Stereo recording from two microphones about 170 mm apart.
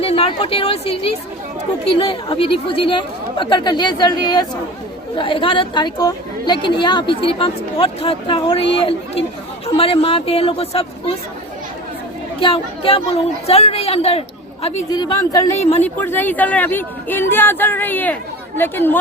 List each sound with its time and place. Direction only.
0.0 s a woman's voice: 35° left (ahead or behind)
12.4 s a woman's voice: 30° left (ahead or behind)
14.8 s a woman's voice: 25° left (ahead or behind)
15.5 s a woman's voice: 40° left (ahead or behind)
15.8 s speech: 10° left (ahead or behind)